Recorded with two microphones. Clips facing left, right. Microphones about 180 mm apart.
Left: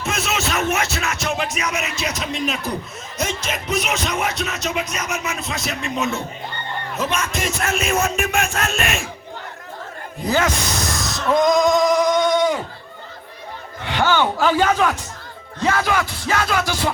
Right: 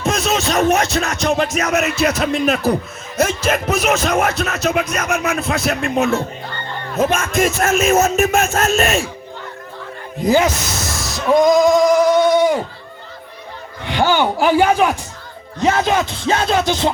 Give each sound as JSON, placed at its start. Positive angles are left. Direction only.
{"t": 0.0, "sound": "music", "side_deg": -35}
{"t": 1.5, "sound": "speech", "side_deg": -45}
{"t": 10.2, "sound": "speech", "side_deg": -15}
{"t": 11.1, "sound": "music", "side_deg": 0}
{"t": 13.8, "sound": "a man's voice", "side_deg": -15}
{"t": 15.6, "sound": "music", "side_deg": -20}